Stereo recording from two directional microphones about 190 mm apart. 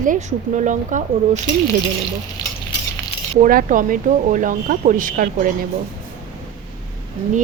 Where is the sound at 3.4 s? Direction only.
45° right (ahead or behind).